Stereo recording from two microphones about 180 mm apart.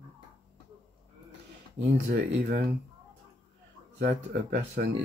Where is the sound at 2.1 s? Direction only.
65° right (ahead or behind).